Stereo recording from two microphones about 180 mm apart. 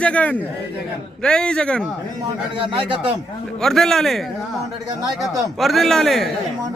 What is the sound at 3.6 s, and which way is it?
Speech, centre (ahead or behind).